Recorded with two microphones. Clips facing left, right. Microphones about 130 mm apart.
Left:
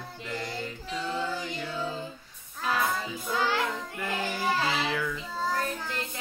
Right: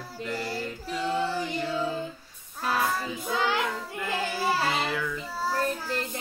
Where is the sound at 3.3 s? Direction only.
20° right (ahead or behind).